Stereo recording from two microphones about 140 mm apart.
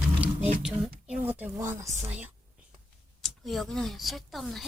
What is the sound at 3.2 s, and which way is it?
Speech, centre (ahead or behind).